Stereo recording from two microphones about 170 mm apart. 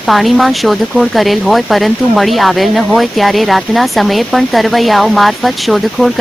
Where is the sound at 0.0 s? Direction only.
Centre (ahead or behind).